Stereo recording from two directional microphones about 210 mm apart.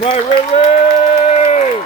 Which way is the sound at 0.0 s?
30° left (ahead or behind).